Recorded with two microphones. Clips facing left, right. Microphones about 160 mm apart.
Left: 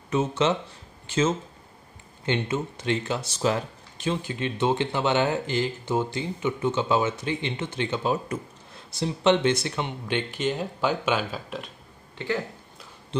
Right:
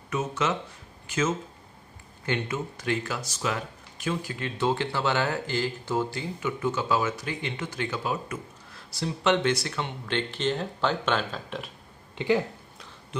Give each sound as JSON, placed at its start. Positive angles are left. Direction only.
{"t": 0.1, "sound": "speech", "side_deg": 30}
{"t": 12.2, "sound": "speech", "side_deg": -15}